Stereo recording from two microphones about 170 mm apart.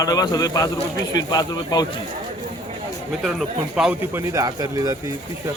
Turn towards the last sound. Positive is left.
turn(degrees=-20)  # may be behind; listen again after turning